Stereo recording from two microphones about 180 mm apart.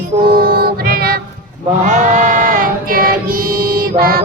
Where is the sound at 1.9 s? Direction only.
45° right (ahead or behind).